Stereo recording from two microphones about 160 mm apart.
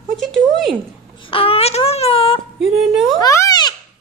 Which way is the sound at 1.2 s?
35° left (ahead or behind).